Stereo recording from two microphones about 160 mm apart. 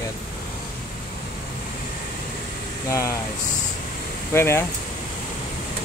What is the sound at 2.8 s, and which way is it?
Speech, 20° left (ahead or behind).